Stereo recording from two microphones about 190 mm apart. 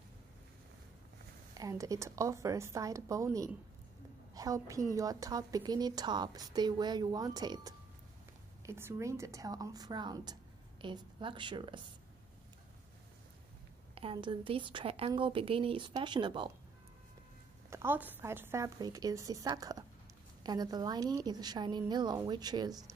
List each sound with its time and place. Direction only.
1.5 s a woman's voice: 20° right (ahead or behind)
13.9 s a woman's voice: 25° right (ahead or behind)
17.6 s a woman's voice: 10° right (ahead or behind)